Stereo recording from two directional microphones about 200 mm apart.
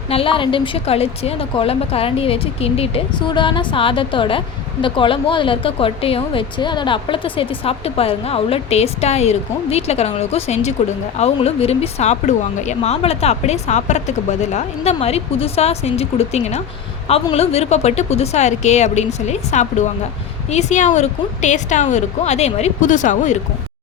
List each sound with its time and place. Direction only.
0.1 s a woman's voice: 25° left (ahead or behind)